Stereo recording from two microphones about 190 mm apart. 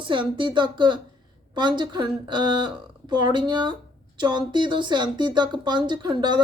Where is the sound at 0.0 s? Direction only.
25° right (ahead or behind).